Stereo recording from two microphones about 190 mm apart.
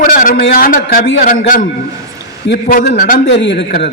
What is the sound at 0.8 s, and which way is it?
Speech, 65° left (ahead or behind).